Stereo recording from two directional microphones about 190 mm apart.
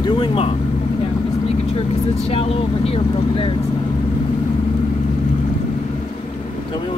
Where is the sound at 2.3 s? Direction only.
30° left (ahead or behind).